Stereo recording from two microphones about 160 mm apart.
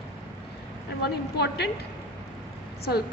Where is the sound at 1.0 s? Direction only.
90° left.